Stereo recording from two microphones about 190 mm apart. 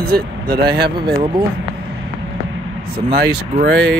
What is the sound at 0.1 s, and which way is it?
Speech, 55° right (ahead or behind).